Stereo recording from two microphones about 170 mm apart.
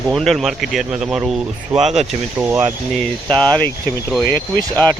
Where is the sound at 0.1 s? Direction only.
Centre (ahead or behind).